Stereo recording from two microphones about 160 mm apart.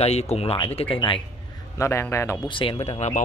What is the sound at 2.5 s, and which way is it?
Speech, 35° left (ahead or behind).